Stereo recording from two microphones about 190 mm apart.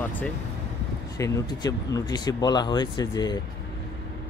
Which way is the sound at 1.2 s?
20° left (ahead or behind).